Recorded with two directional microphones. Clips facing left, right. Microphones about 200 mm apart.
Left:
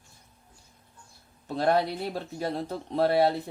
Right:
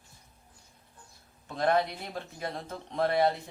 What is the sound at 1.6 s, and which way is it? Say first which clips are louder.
Speech: left 2 dB; 35° left (ahead or behind).